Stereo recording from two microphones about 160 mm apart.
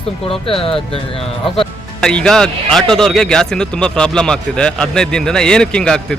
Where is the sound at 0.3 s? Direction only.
35° left (ahead or behind).